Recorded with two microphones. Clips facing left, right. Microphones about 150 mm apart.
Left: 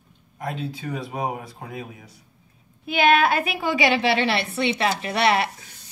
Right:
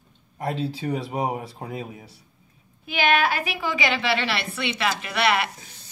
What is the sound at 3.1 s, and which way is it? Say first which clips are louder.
Speech: left 2 dB; 40° left (ahead or behind).